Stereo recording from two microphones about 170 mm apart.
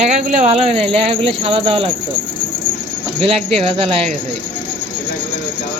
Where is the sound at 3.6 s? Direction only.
35° right (ahead or behind).